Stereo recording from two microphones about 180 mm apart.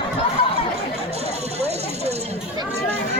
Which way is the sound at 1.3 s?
35° right (ahead or behind).